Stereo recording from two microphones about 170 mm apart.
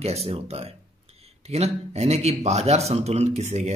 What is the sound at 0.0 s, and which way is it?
A man's voice, 35° right (ahead or behind).